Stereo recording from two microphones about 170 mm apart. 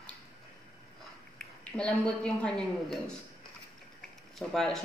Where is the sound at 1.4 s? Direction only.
5° left (ahead or behind).